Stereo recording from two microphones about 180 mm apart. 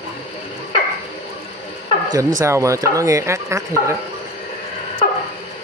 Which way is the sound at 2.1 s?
15° right (ahead or behind).